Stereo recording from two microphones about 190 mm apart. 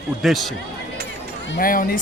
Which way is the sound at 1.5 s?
50° left (ahead or behind).